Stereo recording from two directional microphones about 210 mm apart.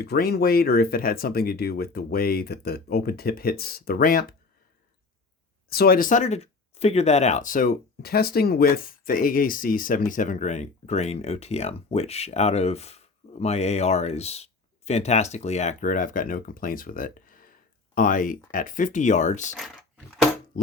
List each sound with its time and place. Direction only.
0.0 s speech: 50° left (ahead or behind)
5.6 s speech: 45° left (ahead or behind)